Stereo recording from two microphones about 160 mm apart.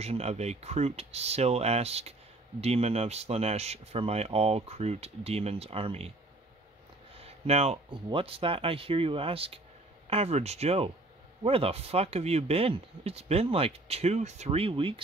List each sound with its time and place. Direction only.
0.0 s speech: 40° right (ahead or behind)
7.2 s speech: 40° right (ahead or behind)